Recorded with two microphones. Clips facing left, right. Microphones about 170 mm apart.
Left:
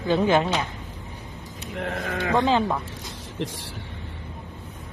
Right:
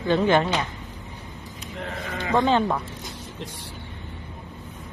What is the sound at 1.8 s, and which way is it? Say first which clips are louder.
Speech: left 4 dB; 55° left (ahead or behind).